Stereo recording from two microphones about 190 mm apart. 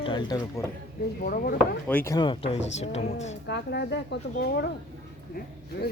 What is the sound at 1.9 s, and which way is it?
Speech, 10° left (ahead or behind).